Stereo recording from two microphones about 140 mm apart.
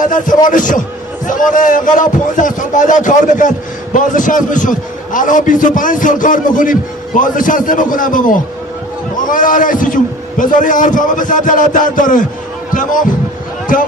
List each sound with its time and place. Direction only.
0.0 s a man's voice: 70° left (ahead or behind)